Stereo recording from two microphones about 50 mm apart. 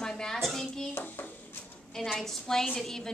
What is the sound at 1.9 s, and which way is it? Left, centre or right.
A woman's voice, centre.